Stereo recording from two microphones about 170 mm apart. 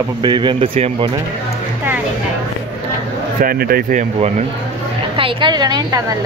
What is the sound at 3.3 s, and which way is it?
Speech, 60° right (ahead or behind).